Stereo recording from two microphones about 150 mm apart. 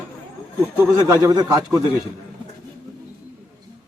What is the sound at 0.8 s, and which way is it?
A man's voice, 20° right (ahead or behind).